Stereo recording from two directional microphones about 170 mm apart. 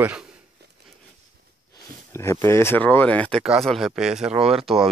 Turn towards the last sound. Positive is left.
turn(degrees=-5)  # may be behind; listen again after turning